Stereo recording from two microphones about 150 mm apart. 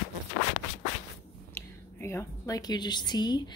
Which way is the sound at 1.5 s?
15° left (ahead or behind).